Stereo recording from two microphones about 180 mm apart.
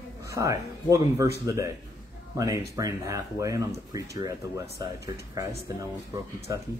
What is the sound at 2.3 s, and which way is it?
Speech, 20° right (ahead or behind).